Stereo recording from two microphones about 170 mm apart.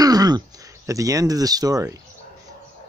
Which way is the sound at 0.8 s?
20° right (ahead or behind).